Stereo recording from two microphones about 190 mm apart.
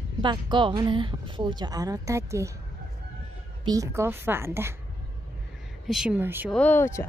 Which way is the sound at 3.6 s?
20° right (ahead or behind).